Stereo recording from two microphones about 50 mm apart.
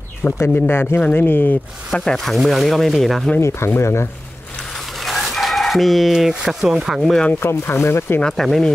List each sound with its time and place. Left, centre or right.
0.2 s speech: left
0.7 s speech: left
1.9 s speech: centre
2.3 s speech: centre
3.3 s speech: left
4.7 s dog: centre
5.3 s speech: centre
7.3 s speech: left
8.2 s speech: centre